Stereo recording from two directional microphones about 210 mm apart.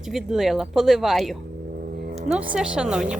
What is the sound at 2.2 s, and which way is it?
Speech, 5° right (ahead or behind).